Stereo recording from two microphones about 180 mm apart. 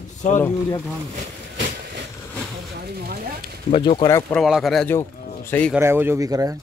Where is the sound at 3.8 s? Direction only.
25° left (ahead or behind).